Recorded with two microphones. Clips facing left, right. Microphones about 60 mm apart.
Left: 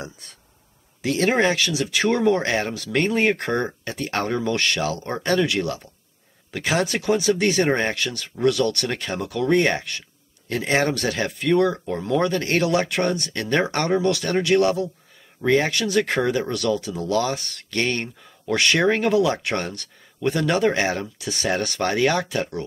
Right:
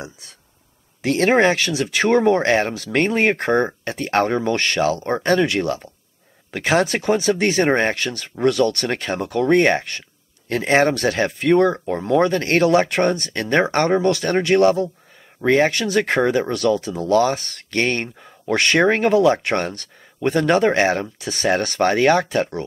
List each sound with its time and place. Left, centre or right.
1.0 s speech: right